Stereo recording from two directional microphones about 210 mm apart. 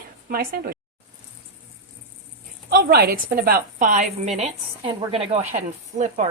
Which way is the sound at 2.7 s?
45° right (ahead or behind).